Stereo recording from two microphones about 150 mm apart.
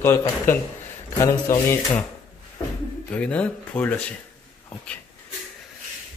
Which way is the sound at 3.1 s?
10° left (ahead or behind).